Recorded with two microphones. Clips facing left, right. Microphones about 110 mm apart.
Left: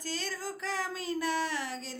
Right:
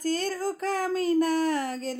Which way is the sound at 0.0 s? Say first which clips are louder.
Right 10 dB; 45° right (ahead or behind).